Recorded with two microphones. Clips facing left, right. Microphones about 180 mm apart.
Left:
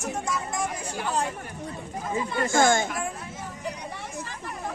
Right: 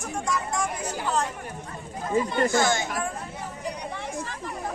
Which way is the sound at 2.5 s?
50° left (ahead or behind).